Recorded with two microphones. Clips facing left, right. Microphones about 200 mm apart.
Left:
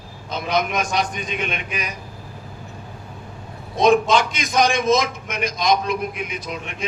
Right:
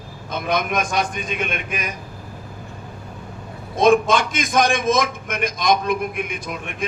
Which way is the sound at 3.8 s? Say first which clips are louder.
Even; 50° right (ahead or behind).